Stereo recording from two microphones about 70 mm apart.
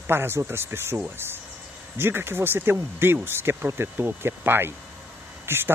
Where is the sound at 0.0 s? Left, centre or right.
Right.